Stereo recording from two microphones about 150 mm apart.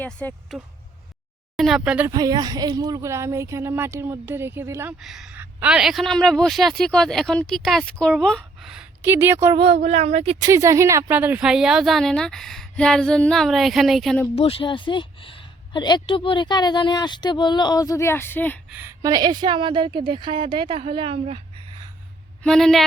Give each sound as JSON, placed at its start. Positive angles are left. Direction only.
{"t": 0.0, "sound": "speech", "side_deg": 10}
{"t": 1.5, "sound": "speech", "side_deg": 0}
{"t": 2.0, "sound": "speech", "side_deg": -25}
{"t": 4.9, "sound": "a woman's voice", "side_deg": -5}
{"t": 9.0, "sound": "speech", "side_deg": -15}
{"t": 9.6, "sound": "speech", "side_deg": -45}
{"t": 10.4, "sound": "a woman's voice", "side_deg": -20}
{"t": 14.3, "sound": "a woman's voice", "side_deg": 35}
{"t": 18.7, "sound": "speech", "side_deg": -15}
{"t": 19.0, "sound": "a woman's voice", "side_deg": -25}
{"t": 22.4, "sound": "a woman's voice", "side_deg": 0}